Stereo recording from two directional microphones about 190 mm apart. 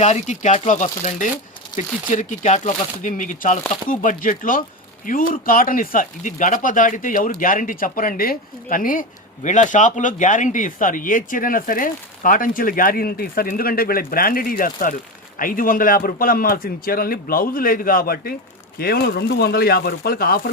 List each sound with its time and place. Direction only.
0.0 s speech: 40° left (ahead or behind)